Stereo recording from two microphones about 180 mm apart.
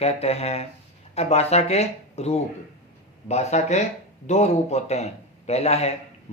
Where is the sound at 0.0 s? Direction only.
35° left (ahead or behind).